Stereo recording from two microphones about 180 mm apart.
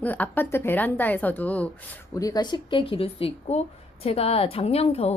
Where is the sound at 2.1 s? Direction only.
20° left (ahead or behind).